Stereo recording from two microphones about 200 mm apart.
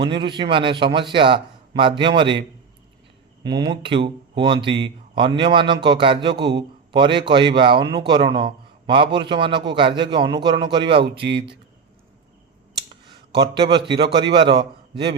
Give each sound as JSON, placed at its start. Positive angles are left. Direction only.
{"t": 0.0, "sound": "speech", "side_deg": -25}
{"t": 3.4, "sound": "speech", "side_deg": -20}
{"t": 11.2, "sound": "speech", "side_deg": -55}
{"t": 12.9, "sound": "a man's voice", "side_deg": -25}